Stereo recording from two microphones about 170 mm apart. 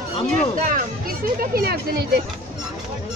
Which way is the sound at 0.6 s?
55° right (ahead or behind).